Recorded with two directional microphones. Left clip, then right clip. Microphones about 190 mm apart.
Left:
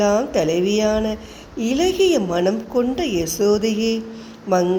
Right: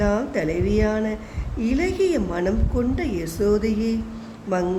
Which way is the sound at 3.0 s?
20° right (ahead or behind).